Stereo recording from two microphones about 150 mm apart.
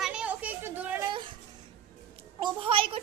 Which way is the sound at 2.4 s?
35° right (ahead or behind).